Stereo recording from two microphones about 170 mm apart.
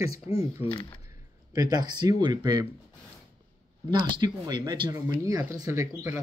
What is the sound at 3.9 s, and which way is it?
Speech, 25° right (ahead or behind).